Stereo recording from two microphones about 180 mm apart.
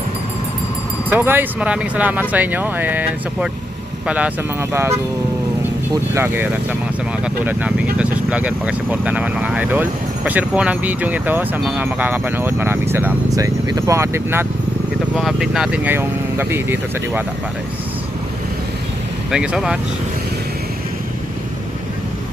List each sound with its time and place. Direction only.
1.1 s speech: 10° right (ahead or behind)
6.1 s speech: 10° right (ahead or behind)
7.9 s speech: 5° right (ahead or behind)
15.1 s speech: centre (ahead or behind)
19.3 s speech: 5° right (ahead or behind)